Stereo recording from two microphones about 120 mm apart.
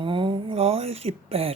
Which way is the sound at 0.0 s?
45° right (ahead or behind).